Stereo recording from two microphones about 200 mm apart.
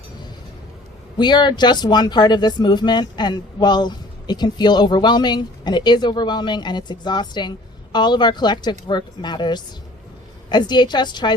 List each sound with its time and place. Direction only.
1.2 s speech: 20° left (ahead or behind)